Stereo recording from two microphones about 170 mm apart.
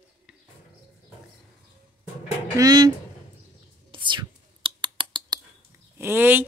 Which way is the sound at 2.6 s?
25° right (ahead or behind).